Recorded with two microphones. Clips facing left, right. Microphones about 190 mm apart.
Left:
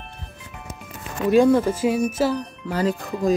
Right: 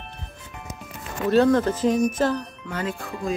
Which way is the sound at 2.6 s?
35° left (ahead or behind).